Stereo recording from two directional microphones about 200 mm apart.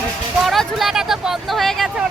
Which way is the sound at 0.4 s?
Centre (ahead or behind).